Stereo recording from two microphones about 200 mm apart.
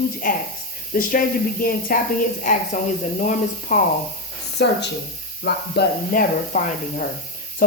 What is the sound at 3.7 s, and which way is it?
Speech, 50° left (ahead or behind).